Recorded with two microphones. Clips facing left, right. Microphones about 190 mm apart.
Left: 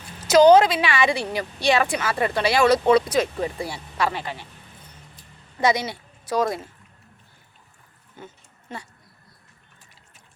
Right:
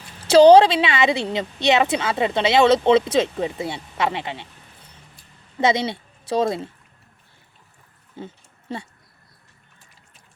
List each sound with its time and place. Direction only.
0.3 s speech: 30° right (ahead or behind)
5.5 s speech: 25° right (ahead or behind)
8.2 s speech: 30° right (ahead or behind)